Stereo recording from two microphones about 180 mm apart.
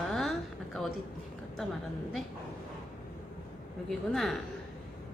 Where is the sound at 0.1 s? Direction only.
Centre (ahead or behind).